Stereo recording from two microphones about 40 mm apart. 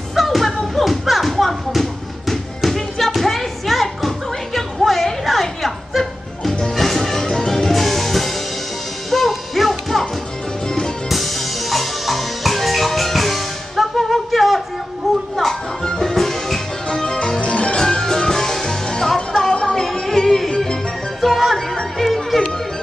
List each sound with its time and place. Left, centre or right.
0.1 s a sound: centre
4.6 s music: centre
11.1 s music: centre
15.0 s a sound: centre
15.8 s music: centre
16.1 s music: centre
17.4 s music: left
17.7 s music: centre
21.2 s music: centre